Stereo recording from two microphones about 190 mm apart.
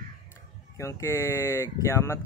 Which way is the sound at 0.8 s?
15° left (ahead or behind).